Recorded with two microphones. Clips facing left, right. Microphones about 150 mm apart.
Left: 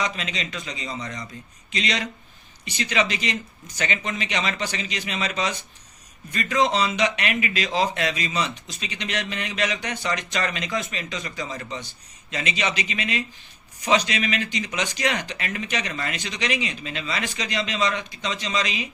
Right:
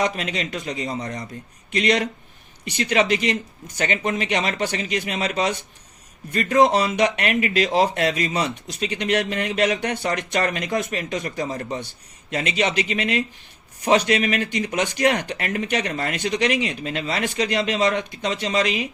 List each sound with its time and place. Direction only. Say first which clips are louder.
0.0 s a man's voice: right 5 dB; 55° right (ahead or behind)